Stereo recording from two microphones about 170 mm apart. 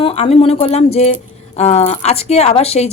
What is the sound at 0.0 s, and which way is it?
A woman's voice, 35° left (ahead or behind).